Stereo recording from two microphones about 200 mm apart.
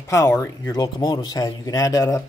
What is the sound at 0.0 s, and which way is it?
Speech, 15° left (ahead or behind).